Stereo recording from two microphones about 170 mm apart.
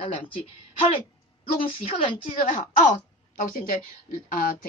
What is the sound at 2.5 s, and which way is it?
Speech, 50° left (ahead or behind).